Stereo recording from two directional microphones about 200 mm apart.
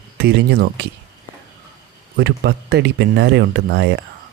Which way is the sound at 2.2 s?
60° right (ahead or behind).